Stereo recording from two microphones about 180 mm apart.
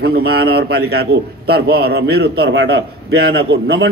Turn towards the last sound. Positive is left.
turn(degrees=-65)  # may be behind; listen again after turning